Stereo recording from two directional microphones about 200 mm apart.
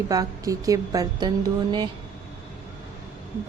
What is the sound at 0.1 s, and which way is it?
A woman's voice, 20° right (ahead or behind).